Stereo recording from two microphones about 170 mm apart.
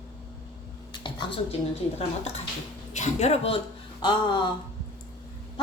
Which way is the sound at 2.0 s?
40° left (ahead or behind).